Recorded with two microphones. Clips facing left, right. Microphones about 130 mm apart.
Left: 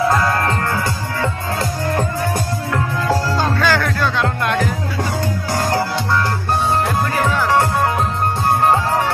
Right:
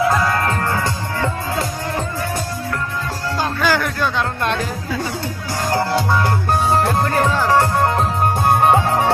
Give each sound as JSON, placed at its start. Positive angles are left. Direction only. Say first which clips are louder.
{"t": 3.5, "sound": "music", "louder": "left 1 dB", "side_deg": -15}
{"t": 7.2, "sound": "music", "louder": "even", "side_deg": -20}